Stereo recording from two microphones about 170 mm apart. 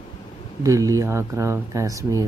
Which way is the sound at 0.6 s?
20° right (ahead or behind).